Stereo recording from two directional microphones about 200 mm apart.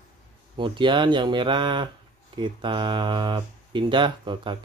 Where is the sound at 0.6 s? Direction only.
25° right (ahead or behind).